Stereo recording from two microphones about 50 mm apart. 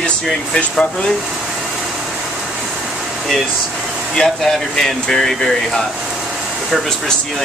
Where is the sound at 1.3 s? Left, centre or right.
Centre.